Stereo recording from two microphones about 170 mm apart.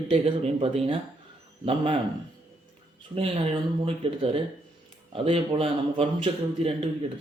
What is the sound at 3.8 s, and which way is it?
A man's voice, 35° right (ahead or behind).